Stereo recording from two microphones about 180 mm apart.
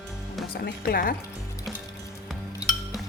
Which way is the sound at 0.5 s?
55° left (ahead or behind).